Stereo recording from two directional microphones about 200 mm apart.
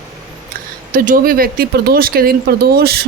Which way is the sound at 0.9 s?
45° right (ahead or behind).